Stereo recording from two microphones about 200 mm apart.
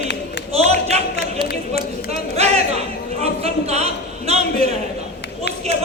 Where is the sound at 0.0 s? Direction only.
60° left (ahead or behind).